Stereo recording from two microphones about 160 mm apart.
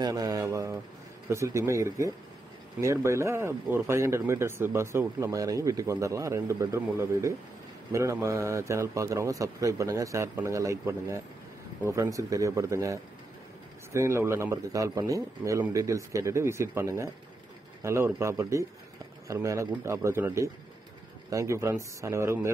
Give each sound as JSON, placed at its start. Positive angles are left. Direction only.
{"t": 0.0, "sound": "a man's voice", "side_deg": -25}